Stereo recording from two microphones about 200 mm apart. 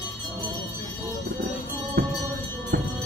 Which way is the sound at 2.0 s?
55° right (ahead or behind).